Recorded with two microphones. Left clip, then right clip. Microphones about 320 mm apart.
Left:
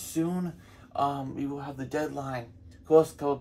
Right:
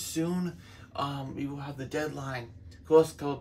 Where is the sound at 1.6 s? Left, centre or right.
Centre.